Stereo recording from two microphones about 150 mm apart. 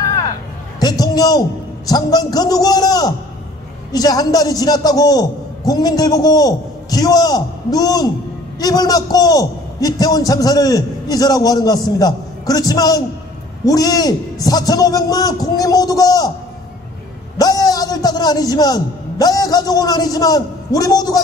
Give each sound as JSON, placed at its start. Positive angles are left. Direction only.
{"t": 0.7, "sound": "a sound", "side_deg": 25}
{"t": 1.9, "sound": "a man's voice", "side_deg": 25}
{"t": 17.4, "sound": "a man's voice", "side_deg": 25}